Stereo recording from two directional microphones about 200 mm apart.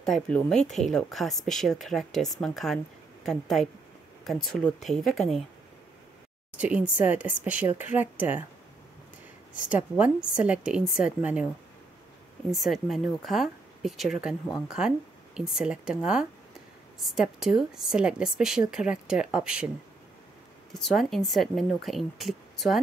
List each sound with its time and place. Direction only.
0.0 s speech: 5° left (ahead or behind)
6.5 s speech: 5° right (ahead or behind)
9.7 s speech: 5° right (ahead or behind)
12.4 s speech: centre (ahead or behind)
20.7 s speech: centre (ahead or behind)